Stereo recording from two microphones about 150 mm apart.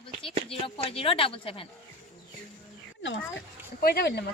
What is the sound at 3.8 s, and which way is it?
Speech, 90° left.